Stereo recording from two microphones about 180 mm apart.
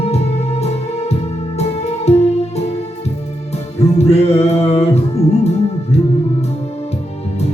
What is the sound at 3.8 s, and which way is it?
Music, 35° left (ahead or behind).